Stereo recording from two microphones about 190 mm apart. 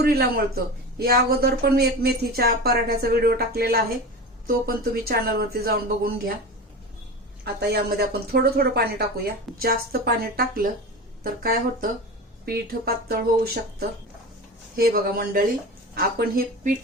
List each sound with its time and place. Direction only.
0.0 s speech: 55° right (ahead or behind)
7.4 s speech: 60° right (ahead or behind)